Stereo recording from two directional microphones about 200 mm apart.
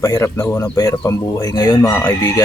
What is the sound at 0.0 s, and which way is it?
Speech, 15° left (ahead or behind).